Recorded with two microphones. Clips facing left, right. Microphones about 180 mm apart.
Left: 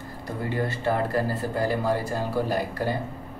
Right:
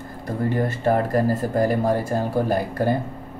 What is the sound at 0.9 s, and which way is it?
A man's voice, 45° right (ahead or behind).